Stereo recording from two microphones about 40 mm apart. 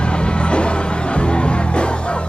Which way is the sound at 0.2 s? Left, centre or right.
Left.